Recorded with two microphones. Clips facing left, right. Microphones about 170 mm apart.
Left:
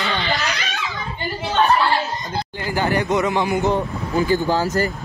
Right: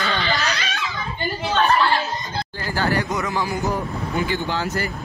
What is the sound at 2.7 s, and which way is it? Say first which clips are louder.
A man's voice: left 3 dB; 15° left (ahead or behind).